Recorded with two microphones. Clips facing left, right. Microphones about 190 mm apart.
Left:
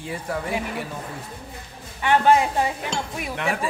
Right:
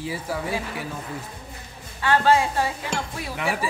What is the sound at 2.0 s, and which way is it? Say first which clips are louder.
Speech: left 2 dB; 20° left (ahead or behind).